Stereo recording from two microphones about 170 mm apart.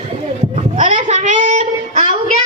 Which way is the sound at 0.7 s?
50° right (ahead or behind).